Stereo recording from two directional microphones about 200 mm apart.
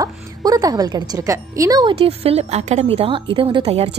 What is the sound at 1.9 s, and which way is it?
A woman's voice, 30° right (ahead or behind).